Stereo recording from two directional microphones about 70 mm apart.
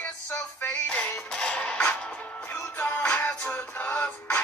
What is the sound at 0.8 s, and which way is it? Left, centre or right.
Music, centre.